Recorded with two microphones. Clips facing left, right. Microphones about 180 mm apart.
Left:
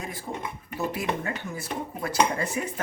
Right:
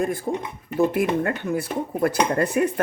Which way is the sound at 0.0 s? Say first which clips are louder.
Right 10 dB; 50° right (ahead or behind).